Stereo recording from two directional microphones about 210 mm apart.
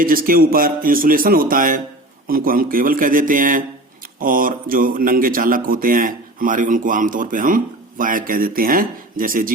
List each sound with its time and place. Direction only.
0.0 s a man's voice: 40° right (ahead or behind)